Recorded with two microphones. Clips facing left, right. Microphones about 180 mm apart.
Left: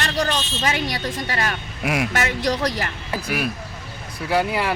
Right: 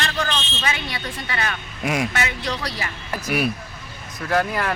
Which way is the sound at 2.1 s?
45° left (ahead or behind).